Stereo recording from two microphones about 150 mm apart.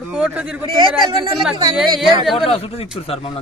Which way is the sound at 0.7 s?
35° right (ahead or behind).